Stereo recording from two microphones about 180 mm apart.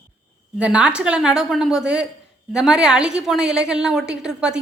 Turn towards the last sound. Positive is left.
turn(degrees=-5)  # may be behind; listen again after turning